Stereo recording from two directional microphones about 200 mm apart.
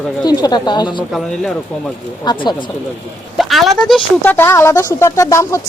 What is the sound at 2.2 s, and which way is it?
Speech, 20° left (ahead or behind).